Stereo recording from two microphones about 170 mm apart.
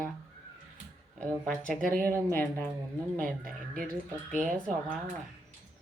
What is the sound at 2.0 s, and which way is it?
Speech, 15° right (ahead or behind).